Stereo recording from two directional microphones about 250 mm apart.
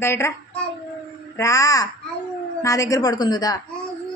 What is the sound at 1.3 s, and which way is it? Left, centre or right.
A woman's voice, centre.